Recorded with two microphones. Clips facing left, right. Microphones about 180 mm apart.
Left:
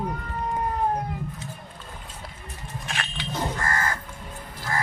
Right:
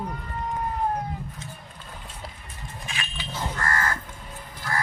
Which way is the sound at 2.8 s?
65° left (ahead or behind).